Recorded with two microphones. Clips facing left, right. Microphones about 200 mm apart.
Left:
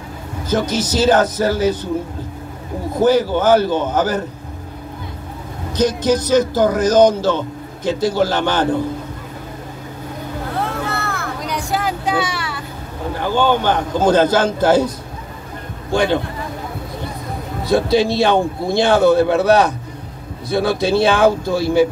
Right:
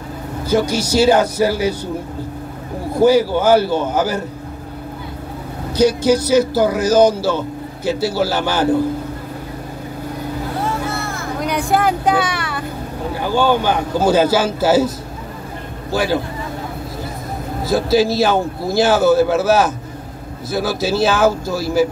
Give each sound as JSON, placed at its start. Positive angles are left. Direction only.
{"t": 0.5, "sound": "speech", "side_deg": -10}
{"t": 2.9, "sound": "speech", "side_deg": -10}
{"t": 5.8, "sound": "speech", "side_deg": -10}
{"t": 10.6, "sound": "vehicle", "side_deg": 60}
{"t": 11.4, "sound": "vehicle", "side_deg": -55}
{"t": 13.1, "sound": "speech", "side_deg": -10}
{"t": 15.9, "sound": "a man's voice", "side_deg": -5}
{"t": 17.6, "sound": "a man's voice", "side_deg": 0}